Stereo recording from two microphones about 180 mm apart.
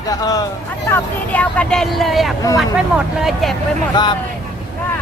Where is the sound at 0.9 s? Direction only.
5° left (ahead or behind).